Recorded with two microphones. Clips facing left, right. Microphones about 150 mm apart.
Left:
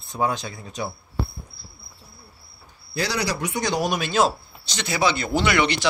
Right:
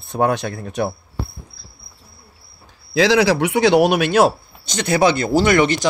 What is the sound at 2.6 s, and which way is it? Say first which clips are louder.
Speech: right 12 dB; 90° right.